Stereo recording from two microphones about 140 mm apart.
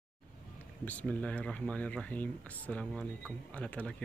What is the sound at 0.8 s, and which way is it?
Speech, 10° left (ahead or behind).